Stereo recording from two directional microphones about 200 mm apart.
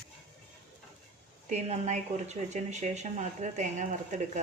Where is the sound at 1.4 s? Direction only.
35° right (ahead or behind).